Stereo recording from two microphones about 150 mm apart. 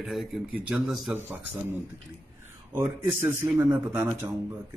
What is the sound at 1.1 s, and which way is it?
A man's voice, 15° right (ahead or behind).